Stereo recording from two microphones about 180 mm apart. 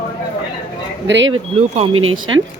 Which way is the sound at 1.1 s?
85° right.